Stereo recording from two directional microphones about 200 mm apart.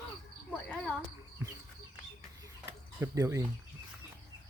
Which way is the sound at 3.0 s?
15° right (ahead or behind).